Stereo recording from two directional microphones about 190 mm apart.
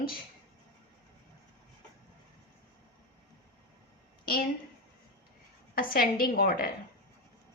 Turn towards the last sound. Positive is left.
turn(degrees=50)  # may be behind; listen again after turning